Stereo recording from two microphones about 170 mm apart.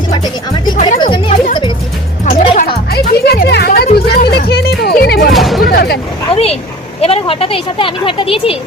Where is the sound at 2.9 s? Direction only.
70° left (ahead or behind).